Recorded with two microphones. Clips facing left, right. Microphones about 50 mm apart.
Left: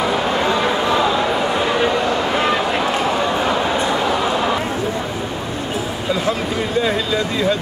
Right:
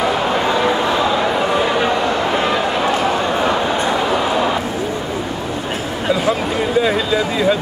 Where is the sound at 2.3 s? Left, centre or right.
Centre.